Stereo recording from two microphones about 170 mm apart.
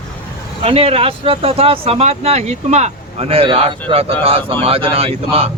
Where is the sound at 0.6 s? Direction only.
35° right (ahead or behind).